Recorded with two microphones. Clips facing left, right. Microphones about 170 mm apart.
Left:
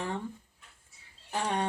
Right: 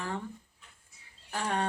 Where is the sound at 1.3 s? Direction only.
15° left (ahead or behind).